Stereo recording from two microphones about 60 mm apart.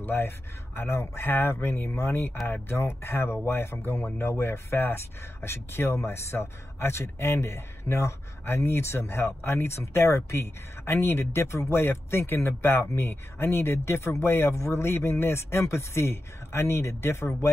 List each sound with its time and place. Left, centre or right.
0.0 s a man's voice: left